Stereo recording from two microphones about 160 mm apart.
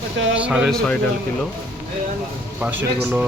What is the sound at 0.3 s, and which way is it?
Speech, 5° right (ahead or behind).